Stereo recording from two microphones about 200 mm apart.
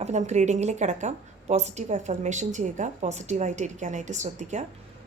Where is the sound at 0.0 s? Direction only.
35° right (ahead or behind).